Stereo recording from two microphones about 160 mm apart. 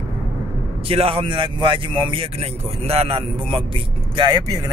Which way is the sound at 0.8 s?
35° right (ahead or behind).